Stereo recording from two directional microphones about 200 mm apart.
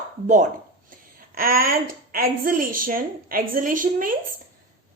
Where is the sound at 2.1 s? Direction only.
45° right (ahead or behind).